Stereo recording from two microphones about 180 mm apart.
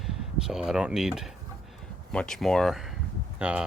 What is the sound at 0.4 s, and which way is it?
Speech, 5° right (ahead or behind).